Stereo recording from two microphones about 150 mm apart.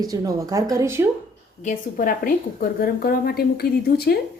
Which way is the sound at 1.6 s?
70° left (ahead or behind).